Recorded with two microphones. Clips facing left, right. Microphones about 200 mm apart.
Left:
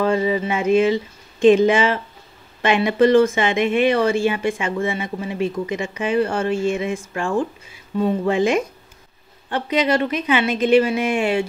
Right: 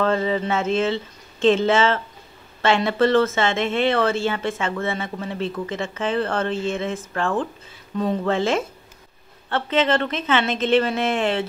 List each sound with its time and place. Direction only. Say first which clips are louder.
0.0 s speech: left 2 dB; 10° left (ahead or behind)